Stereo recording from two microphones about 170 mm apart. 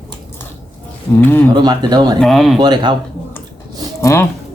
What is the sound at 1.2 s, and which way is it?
Speech, 10° left (ahead or behind).